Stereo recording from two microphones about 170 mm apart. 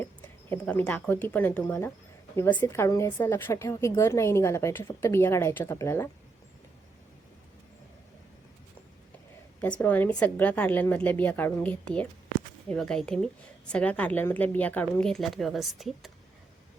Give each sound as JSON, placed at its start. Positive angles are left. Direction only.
{"t": 0.5, "sound": "a woman's voice", "side_deg": 10}
{"t": 9.8, "sound": "a woman's voice", "side_deg": 10}